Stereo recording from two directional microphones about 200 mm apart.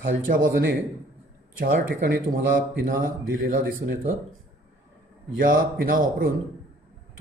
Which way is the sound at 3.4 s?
45° right (ahead or behind).